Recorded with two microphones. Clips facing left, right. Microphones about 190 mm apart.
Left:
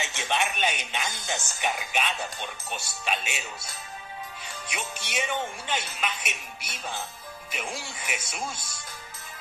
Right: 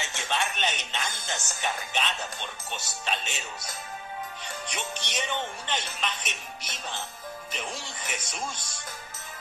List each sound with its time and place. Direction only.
0.0 s speech: 20° left (ahead or behind)
4.6 s speech: 10° left (ahead or behind)